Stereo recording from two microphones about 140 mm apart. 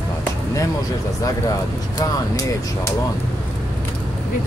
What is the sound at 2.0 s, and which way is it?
Speech, 25° left (ahead or behind).